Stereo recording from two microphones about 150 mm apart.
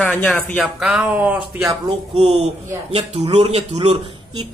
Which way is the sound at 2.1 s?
45° right (ahead or behind).